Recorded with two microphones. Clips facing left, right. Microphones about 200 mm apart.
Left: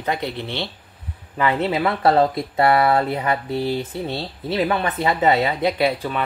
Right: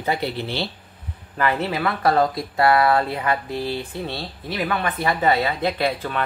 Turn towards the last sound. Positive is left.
turn(degrees=10)  # may be behind; listen again after turning